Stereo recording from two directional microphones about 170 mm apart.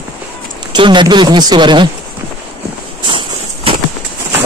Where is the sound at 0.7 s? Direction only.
25° right (ahead or behind).